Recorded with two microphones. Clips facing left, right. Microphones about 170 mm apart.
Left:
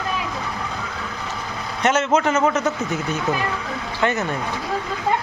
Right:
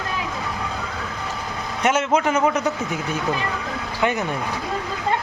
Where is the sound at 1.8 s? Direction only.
10° right (ahead or behind).